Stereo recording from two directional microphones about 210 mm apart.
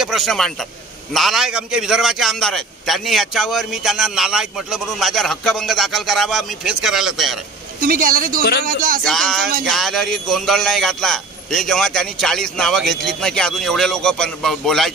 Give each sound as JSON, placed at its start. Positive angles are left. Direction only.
{"t": 0.0, "sound": "a man's voice", "side_deg": 0}
{"t": 7.8, "sound": "speech", "side_deg": -40}
{"t": 8.6, "sound": "music", "side_deg": -40}
{"t": 9.0, "sound": "a man's voice", "side_deg": 0}